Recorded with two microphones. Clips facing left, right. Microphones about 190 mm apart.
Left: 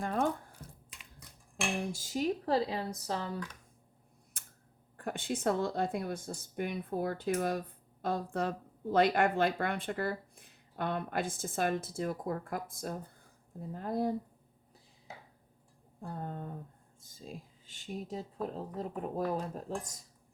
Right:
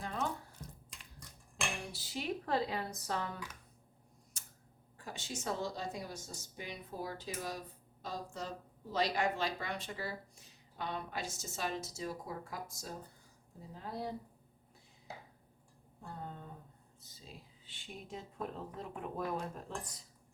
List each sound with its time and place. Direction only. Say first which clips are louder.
0.0 s a sound: left 7 dB; 50° left (ahead or behind)
1.8 s speech: left 9 dB; 45° left (ahead or behind)
4.4 s camera: left 2 dB; 55° left (ahead or behind)
4.9 s speech: left 9 dB; 55° left (ahead or behind)
16.0 s speech: left 6 dB; 50° left (ahead or behind)